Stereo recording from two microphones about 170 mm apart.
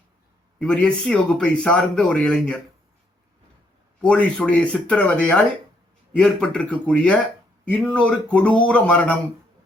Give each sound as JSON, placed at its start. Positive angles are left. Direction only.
{"t": 0.6, "sound": "speech", "side_deg": 5}
{"t": 4.0, "sound": "speech", "side_deg": 5}